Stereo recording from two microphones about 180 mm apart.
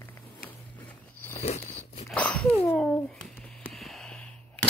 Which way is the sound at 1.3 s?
35° left (ahead or behind).